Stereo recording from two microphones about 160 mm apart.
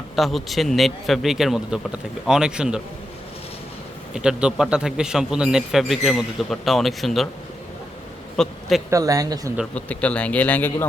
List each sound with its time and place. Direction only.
0.2 s a man's voice: centre (ahead or behind)
4.1 s a man's voice: 5° right (ahead or behind)
8.4 s a man's voice: 5° left (ahead or behind)
8.9 s speech: 20° right (ahead or behind)
9.7 s a man's voice: 10° left (ahead or behind)